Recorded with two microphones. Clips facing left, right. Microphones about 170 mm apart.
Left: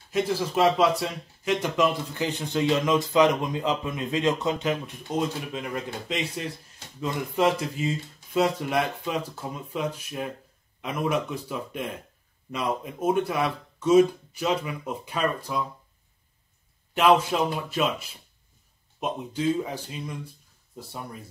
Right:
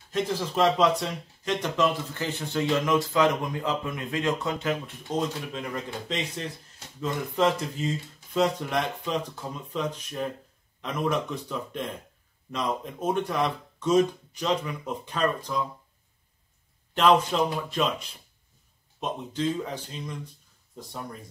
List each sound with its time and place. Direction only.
0.1 s a man's voice: 10° left (ahead or behind)
16.9 s speech: 10° left (ahead or behind)